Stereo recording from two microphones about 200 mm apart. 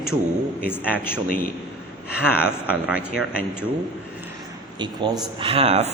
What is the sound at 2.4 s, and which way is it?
Speech, 5° right (ahead or behind).